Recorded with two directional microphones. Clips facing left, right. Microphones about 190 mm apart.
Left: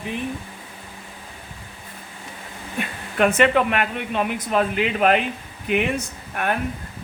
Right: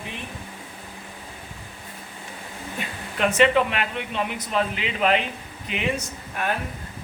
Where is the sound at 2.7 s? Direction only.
55° left (ahead or behind).